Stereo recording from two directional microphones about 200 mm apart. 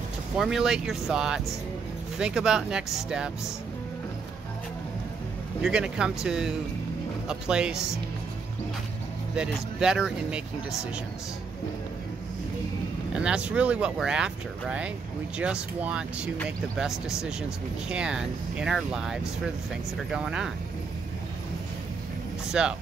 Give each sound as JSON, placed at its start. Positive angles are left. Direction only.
{"t": 0.4, "sound": "speech", "side_deg": 0}
{"t": 5.6, "sound": "speech", "side_deg": -5}
{"t": 9.3, "sound": "speech", "side_deg": -5}
{"t": 13.1, "sound": "speech", "side_deg": -5}
{"t": 22.5, "sound": "speech", "side_deg": -5}